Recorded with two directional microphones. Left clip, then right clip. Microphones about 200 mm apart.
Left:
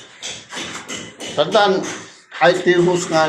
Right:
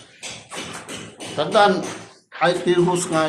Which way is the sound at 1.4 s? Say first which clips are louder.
Left 2 dB; 5° right (ahead or behind).